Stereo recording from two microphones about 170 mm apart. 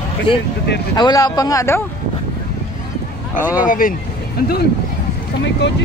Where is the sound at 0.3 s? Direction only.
30° left (ahead or behind).